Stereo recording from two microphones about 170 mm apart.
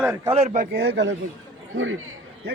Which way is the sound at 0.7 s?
85° right.